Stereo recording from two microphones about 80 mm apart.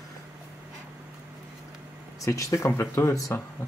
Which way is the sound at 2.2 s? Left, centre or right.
Left.